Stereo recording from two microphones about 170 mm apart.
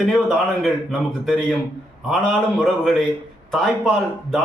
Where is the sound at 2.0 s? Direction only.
Centre (ahead or behind).